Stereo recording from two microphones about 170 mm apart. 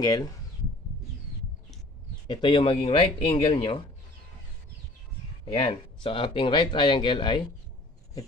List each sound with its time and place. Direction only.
0.0 s speech: 20° left (ahead or behind)
2.2 s speech: 30° left (ahead or behind)
5.4 s speech: 30° left (ahead or behind)